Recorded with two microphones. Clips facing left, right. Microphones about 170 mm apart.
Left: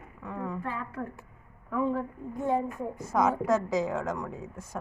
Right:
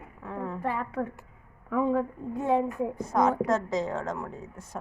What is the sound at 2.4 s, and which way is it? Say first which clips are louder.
Speech: right 3 dB; 90° right.